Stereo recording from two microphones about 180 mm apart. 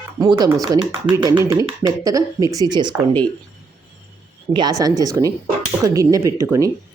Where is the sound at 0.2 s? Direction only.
20° right (ahead or behind).